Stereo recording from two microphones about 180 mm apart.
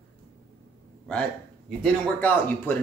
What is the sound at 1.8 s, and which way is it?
Speech, 10° left (ahead or behind).